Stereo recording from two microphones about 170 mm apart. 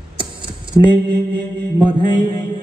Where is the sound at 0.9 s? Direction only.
25° right (ahead or behind).